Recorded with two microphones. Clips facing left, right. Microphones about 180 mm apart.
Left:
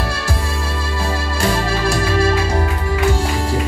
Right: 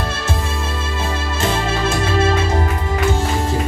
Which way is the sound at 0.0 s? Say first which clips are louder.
Even; 20° right (ahead or behind).